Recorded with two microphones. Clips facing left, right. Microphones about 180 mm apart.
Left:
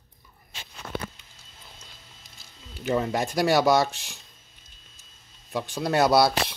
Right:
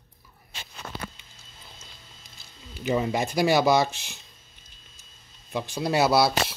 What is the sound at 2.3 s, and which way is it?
Speech, centre (ahead or behind).